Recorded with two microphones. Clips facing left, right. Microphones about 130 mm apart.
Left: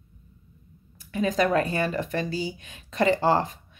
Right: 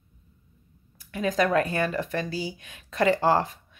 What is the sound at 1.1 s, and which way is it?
Speech, centre (ahead or behind).